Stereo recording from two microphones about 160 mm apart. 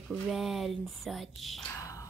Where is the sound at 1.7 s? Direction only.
20° left (ahead or behind).